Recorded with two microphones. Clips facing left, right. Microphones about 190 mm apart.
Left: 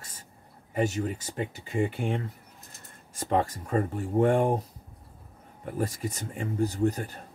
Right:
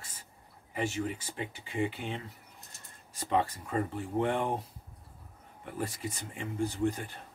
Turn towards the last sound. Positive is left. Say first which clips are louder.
# left 4 dB
turn(degrees=40)  # may be behind; listen again after turning